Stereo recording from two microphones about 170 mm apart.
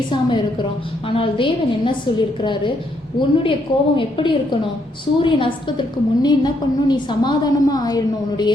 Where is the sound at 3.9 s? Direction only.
30° left (ahead or behind).